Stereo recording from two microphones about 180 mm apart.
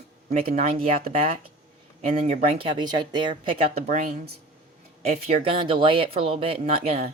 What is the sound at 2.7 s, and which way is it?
Speech, 25° right (ahead or behind).